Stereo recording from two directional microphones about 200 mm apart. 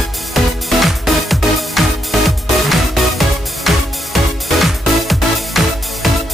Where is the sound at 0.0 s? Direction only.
Centre (ahead or behind).